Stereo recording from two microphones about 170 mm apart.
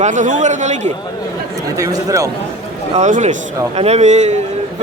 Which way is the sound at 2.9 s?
45° right (ahead or behind).